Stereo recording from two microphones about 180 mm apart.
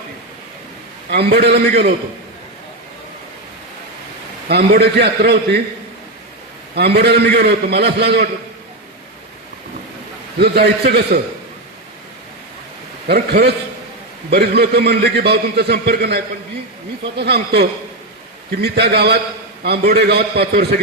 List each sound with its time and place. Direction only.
1.1 s a man's voice: 65° right (ahead or behind)
4.4 s a man's voice: 65° right (ahead or behind)
6.7 s a man's voice: 65° right (ahead or behind)
10.3 s a man's voice: 60° right (ahead or behind)
13.1 s a man's voice: 65° right (ahead or behind)